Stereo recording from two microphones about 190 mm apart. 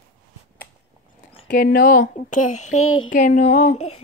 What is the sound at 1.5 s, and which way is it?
Speech, 50° left (ahead or behind).